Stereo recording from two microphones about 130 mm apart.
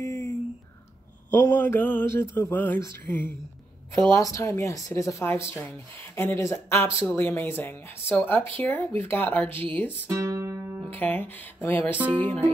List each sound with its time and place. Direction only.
0.0 s a sound: 25° left (ahead or behind)
1.3 s a woman's voice: 15° left (ahead or behind)
10.0 s music: 25° right (ahead or behind)
10.9 s speech: 15° left (ahead or behind)